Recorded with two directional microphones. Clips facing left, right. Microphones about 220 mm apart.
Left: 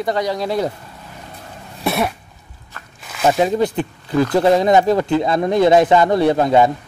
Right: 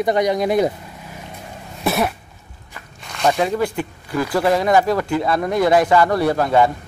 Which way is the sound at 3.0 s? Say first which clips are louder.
Left 2 dB; 5° left (ahead or behind).